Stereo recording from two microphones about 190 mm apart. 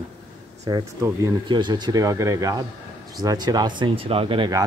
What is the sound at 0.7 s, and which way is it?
Speech, 20° right (ahead or behind).